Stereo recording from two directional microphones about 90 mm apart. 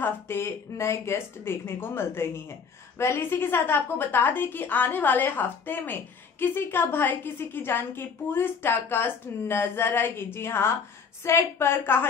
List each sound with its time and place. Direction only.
0.0 s a woman's voice: 30° left (ahead or behind)